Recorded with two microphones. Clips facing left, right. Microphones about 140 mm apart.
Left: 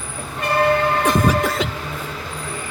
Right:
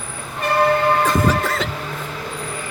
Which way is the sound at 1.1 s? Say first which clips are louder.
Left 1 dB; 15° left (ahead or behind).